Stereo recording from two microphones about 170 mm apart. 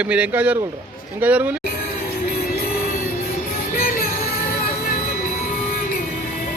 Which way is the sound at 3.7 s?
55° left (ahead or behind).